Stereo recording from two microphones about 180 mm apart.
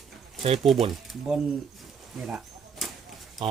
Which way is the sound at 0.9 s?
Centre (ahead or behind).